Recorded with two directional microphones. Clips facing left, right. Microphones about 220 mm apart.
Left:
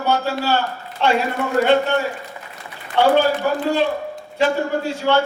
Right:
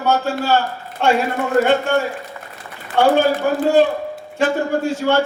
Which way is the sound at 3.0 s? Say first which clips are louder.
Right 1 dB; 50° right (ahead or behind).